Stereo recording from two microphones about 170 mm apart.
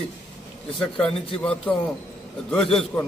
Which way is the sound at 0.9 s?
35° left (ahead or behind).